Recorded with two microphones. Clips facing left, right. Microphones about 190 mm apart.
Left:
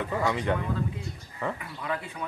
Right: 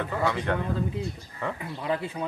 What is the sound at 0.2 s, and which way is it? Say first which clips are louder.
Speech: right 1 dB; 15° left (ahead or behind).